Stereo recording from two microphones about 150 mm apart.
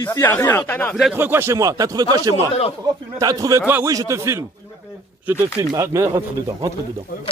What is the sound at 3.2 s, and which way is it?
A man's voice, 25° right (ahead or behind).